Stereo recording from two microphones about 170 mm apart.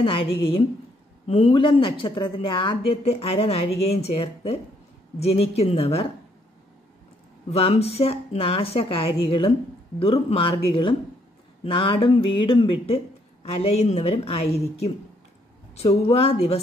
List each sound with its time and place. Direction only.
0.0 s a woman's voice: 30° left (ahead or behind)
7.4 s a woman's voice: 35° left (ahead or behind)